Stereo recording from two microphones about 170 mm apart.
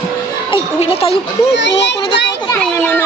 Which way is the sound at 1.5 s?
90° left.